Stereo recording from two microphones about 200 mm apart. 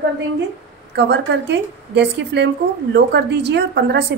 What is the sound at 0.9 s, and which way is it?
A woman's voice, 60° right (ahead or behind).